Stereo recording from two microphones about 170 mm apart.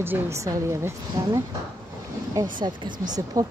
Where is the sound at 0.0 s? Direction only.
15° right (ahead or behind).